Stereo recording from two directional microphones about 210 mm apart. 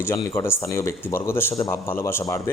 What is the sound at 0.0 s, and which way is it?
Speech, 10° left (ahead or behind).